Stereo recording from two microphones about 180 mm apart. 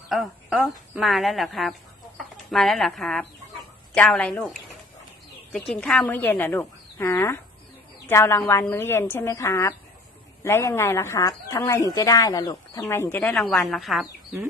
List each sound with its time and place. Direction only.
0.1 s a woman's voice: centre (ahead or behind)